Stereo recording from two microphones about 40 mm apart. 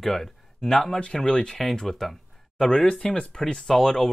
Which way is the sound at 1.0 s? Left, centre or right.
Centre.